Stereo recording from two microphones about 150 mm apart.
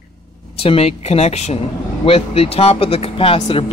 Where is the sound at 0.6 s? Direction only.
40° left (ahead or behind).